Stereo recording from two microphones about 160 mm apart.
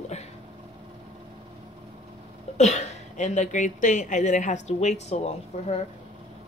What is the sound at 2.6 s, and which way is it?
Speech, 45° left (ahead or behind).